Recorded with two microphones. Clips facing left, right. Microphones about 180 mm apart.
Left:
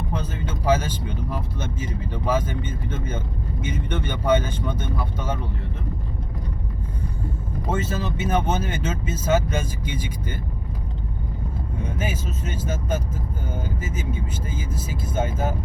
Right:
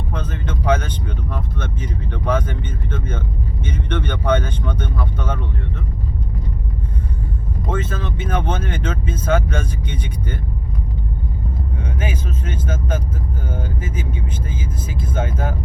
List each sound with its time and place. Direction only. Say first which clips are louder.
0.1 s speech: right 2 dB; 10° left (ahead or behind)
7.7 s speech: even; 10° left (ahead or behind)
14.8 s speech: right 1 dB; 5° left (ahead or behind)